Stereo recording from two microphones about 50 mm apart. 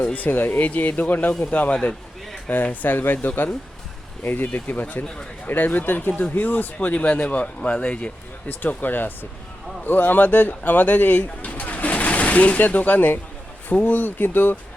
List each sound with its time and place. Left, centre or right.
0.0 s speech: left
0.3 s speech: left
1.7 s speech: centre
2.5 s speech: left
6.7 s speech: left
8.4 s speech: left